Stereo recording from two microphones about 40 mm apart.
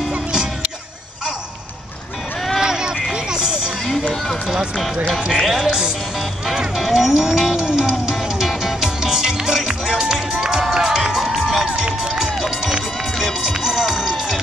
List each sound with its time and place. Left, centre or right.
2.6 s a sound: centre
5.3 s speech: centre
5.7 s speech: centre
6.4 s music: centre
8.0 s music: centre
10.7 s run: centre
11.7 s run: right
12.2 s run: centre
13.9 s music: centre